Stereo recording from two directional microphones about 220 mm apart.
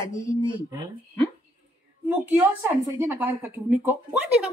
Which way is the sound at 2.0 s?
10° right (ahead or behind).